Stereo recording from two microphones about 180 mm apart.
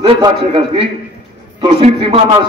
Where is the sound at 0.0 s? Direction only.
30° right (ahead or behind).